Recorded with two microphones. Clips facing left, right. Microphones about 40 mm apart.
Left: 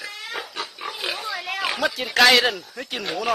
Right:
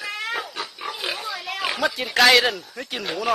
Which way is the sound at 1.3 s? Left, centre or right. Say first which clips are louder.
Left 2 dB; centre.